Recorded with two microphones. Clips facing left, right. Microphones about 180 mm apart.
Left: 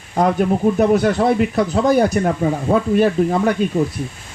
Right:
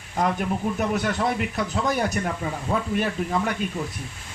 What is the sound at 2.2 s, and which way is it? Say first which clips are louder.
Speech: left 10 dB; 45° left (ahead or behind).